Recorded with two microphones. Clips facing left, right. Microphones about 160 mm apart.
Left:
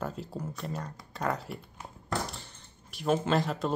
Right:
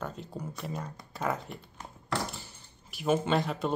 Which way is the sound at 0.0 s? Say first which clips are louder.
Left 2 dB; 5° left (ahead or behind).